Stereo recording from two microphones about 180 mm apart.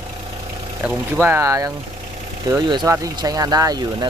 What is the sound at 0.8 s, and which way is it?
Speech, 10° right (ahead or behind).